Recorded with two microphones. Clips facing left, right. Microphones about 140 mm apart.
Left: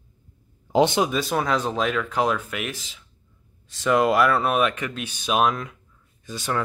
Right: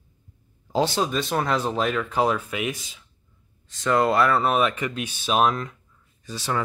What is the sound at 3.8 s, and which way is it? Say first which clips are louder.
Speech: left 1 dB; 10° left (ahead or behind).